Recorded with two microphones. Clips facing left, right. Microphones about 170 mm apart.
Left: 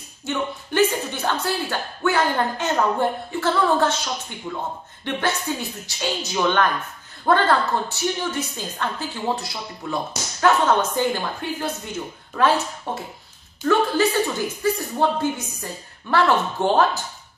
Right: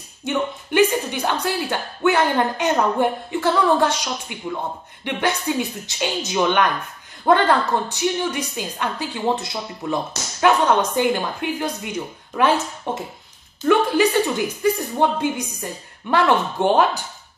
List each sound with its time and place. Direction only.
0.2 s a woman's voice: 15° right (ahead or behind)